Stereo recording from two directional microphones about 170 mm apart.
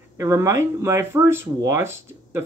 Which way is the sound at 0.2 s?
15° right (ahead or behind).